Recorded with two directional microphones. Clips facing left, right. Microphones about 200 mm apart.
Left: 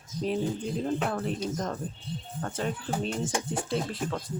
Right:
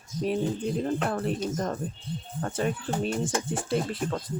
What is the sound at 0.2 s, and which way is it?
Speech, 5° right (ahead or behind).